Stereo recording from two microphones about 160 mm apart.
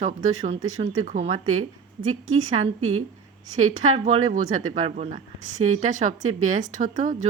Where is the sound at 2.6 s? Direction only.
40° right (ahead or behind).